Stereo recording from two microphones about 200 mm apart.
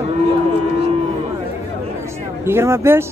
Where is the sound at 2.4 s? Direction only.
10° right (ahead or behind).